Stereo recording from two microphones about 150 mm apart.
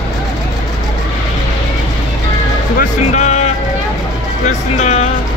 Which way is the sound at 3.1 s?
50° left (ahead or behind).